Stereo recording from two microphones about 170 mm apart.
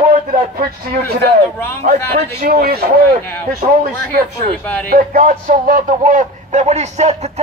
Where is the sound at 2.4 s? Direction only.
65° right (ahead or behind).